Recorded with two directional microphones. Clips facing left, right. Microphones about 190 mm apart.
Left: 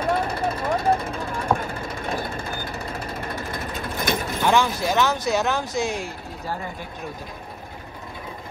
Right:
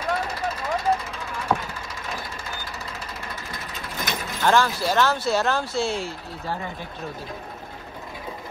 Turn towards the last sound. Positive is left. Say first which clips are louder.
# even
turn(degrees=15)  # may be behind; listen again after turning